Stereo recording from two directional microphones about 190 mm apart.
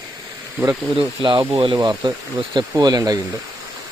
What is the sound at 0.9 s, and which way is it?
Speech, 25° right (ahead or behind).